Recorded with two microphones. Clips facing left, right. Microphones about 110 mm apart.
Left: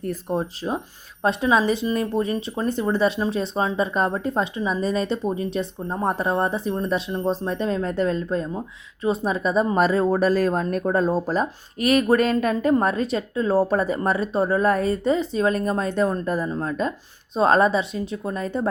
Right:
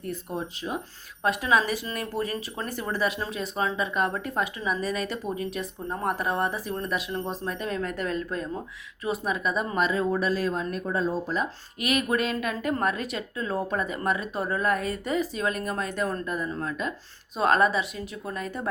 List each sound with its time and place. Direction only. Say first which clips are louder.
0.0 s speech: left 7 dB; 40° left (ahead or behind)
16.2 s speech: left 6 dB; 35° left (ahead or behind)